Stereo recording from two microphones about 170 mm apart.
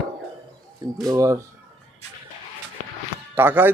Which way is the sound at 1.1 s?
20° right (ahead or behind).